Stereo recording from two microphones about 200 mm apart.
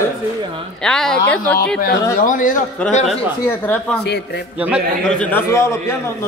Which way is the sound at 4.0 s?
55° left (ahead or behind).